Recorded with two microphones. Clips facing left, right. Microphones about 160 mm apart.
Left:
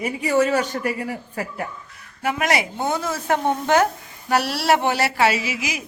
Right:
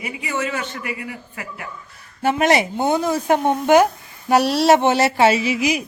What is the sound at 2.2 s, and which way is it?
Speech, 30° right (ahead or behind).